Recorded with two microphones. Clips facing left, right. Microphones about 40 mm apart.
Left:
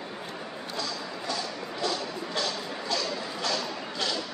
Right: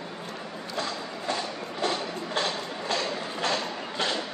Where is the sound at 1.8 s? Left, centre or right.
Right.